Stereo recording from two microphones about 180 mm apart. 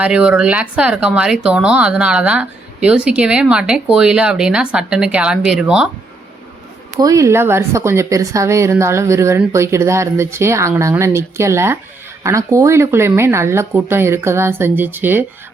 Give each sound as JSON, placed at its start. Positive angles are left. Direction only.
{"t": 0.0, "sound": "speech", "side_deg": -5}
{"t": 7.0, "sound": "speech", "side_deg": -20}